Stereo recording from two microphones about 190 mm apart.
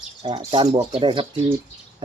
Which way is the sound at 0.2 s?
25° right (ahead or behind).